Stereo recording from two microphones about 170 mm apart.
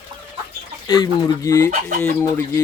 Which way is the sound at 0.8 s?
25° left (ahead or behind).